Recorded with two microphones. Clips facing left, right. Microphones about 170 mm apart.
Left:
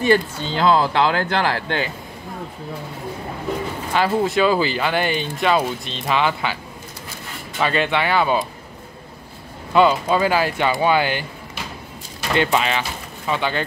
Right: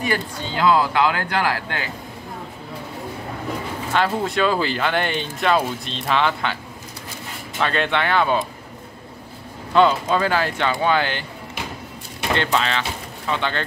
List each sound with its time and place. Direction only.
0.0 s speech: 30° left (ahead or behind)
3.9 s speech: 5° left (ahead or behind)
9.8 s speech: 5° left (ahead or behind)
12.4 s speech: 10° left (ahead or behind)